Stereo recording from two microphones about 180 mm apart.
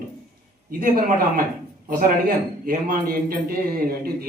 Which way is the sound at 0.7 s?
50° right (ahead or behind).